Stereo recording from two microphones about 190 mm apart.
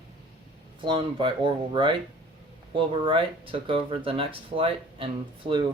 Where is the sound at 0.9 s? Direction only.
25° right (ahead or behind).